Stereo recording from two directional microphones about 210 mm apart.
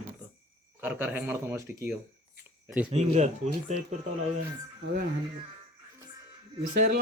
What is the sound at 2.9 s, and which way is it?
Speech, 30° right (ahead or behind).